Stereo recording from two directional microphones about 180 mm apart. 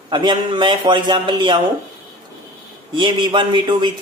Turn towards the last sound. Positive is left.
turn(degrees=-25)  # may be behind; listen again after turning